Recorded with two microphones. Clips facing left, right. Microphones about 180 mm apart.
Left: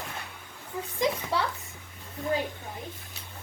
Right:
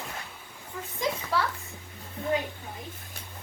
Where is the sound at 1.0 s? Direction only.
20° left (ahead or behind).